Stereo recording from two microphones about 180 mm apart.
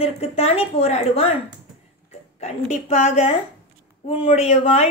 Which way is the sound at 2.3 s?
35° left (ahead or behind).